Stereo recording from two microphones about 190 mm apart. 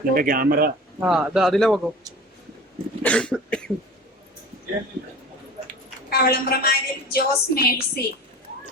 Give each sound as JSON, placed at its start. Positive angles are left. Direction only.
{"t": 0.1, "sound": "speech", "side_deg": -50}
{"t": 1.0, "sound": "speech", "side_deg": -5}
{"t": 3.0, "sound": "cough", "side_deg": 5}
{"t": 6.1, "sound": "a woman's voice", "side_deg": 55}